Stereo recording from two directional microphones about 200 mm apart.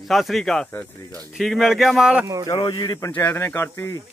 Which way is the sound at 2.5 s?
20° left (ahead or behind).